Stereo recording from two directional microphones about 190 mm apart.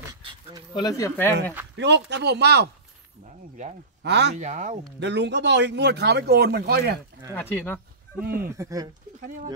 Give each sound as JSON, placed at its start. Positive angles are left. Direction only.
{"t": 0.1, "sound": "a sound", "side_deg": -25}
{"t": 0.7, "sound": "speech", "side_deg": 20}
{"t": 1.8, "sound": "speech", "side_deg": -65}
{"t": 3.3, "sound": "speech", "side_deg": -40}
{"t": 4.0, "sound": "speech", "side_deg": -65}
{"t": 4.4, "sound": "speech", "side_deg": -40}
{"t": 5.0, "sound": "speech", "side_deg": -65}
{"t": 7.3, "sound": "speech", "side_deg": 10}
{"t": 8.5, "sound": "speech", "side_deg": -15}